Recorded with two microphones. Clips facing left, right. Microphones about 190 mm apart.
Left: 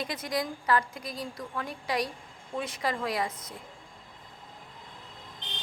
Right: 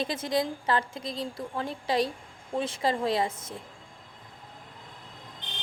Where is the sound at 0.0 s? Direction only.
25° right (ahead or behind).